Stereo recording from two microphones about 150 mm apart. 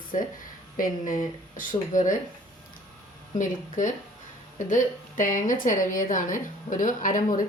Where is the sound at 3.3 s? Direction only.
60° left (ahead or behind).